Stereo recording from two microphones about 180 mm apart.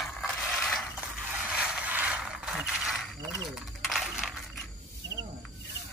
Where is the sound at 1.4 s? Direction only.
10° right (ahead or behind).